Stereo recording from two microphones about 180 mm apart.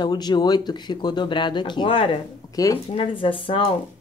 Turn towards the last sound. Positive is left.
turn(degrees=30)  # may be behind; listen again after turning